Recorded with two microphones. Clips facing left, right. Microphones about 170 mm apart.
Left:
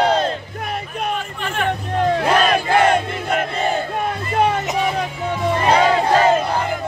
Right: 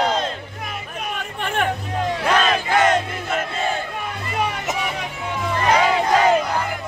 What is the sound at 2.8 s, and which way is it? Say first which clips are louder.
Battle cry: left 1 dB; 35° left (ahead or behind).